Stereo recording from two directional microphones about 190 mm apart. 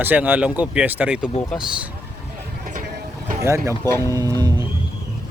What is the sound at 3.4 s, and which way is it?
Speech, 15° right (ahead or behind).